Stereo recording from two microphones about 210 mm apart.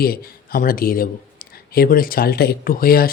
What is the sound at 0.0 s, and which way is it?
Speech, 45° left (ahead or behind).